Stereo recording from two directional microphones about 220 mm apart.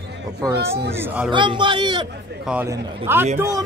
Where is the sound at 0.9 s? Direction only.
10° right (ahead or behind).